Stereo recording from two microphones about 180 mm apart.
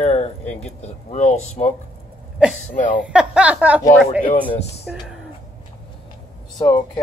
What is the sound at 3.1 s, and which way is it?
Speech, 5° right (ahead or behind).